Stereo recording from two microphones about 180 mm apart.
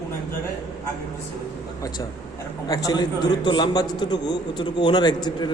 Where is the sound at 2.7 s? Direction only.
20° left (ahead or behind).